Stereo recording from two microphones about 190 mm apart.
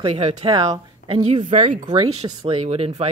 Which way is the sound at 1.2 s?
35° right (ahead or behind).